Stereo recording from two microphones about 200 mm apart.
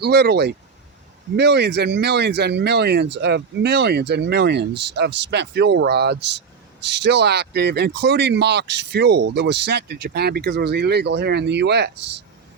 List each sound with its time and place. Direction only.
0.0 s speech: 55° right (ahead or behind)